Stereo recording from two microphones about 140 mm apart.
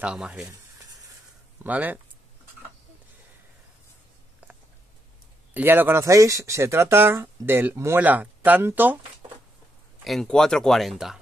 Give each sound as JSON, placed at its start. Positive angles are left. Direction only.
{"t": 0.0, "sound": "speech", "side_deg": -5}
{"t": 1.6, "sound": "speech", "side_deg": -10}
{"t": 5.5, "sound": "speech", "side_deg": -15}
{"t": 10.0, "sound": "speech", "side_deg": 5}